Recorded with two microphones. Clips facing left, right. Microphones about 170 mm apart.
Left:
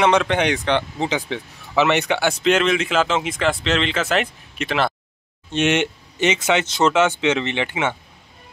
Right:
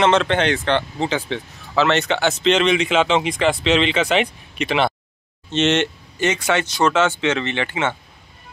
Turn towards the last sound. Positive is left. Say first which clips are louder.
# even
turn(degrees=15)  # may be behind; listen again after turning